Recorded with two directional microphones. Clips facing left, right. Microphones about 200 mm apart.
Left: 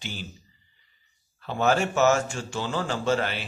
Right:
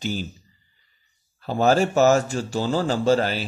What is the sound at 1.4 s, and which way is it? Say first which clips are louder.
Speech: right 5 dB; 35° right (ahead or behind).